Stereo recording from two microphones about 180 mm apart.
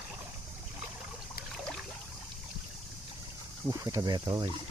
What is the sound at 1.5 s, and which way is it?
Boat, 5° left (ahead or behind).